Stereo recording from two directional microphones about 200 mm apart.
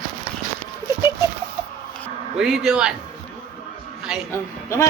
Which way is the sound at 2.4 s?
Centre (ahead or behind).